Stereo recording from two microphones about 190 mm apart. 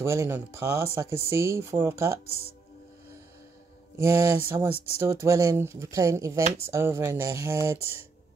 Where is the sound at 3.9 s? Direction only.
15° right (ahead or behind).